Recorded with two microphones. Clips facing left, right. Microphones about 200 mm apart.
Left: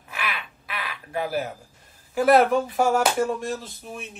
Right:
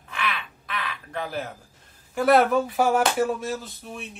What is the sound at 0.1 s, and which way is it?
Crow, 10° left (ahead or behind).